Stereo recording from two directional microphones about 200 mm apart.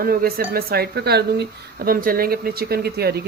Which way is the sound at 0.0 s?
50° right (ahead or behind).